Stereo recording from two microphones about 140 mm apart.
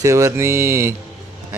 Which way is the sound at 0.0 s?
20° right (ahead or behind).